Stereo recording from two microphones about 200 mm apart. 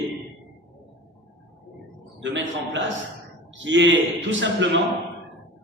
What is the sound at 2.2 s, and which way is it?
A man's voice, 65° right (ahead or behind).